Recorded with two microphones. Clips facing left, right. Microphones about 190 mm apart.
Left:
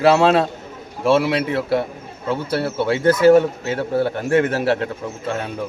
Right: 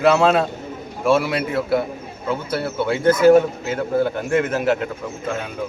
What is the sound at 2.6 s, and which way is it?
A man's voice, 35° left (ahead or behind).